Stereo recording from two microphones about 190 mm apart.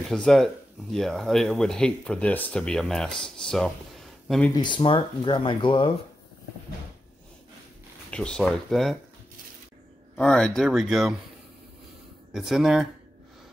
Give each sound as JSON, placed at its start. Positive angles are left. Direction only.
{"t": 0.0, "sound": "speech", "side_deg": 5}
{"t": 4.6, "sound": "speech", "side_deg": 25}
{"t": 8.1, "sound": "speech", "side_deg": 5}
{"t": 10.1, "sound": "speech", "side_deg": 5}
{"t": 12.3, "sound": "speech", "side_deg": 0}